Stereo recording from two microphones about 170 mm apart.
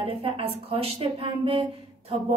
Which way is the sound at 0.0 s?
35° right (ahead or behind).